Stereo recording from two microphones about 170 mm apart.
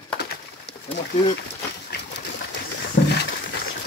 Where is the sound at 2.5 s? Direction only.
80° left.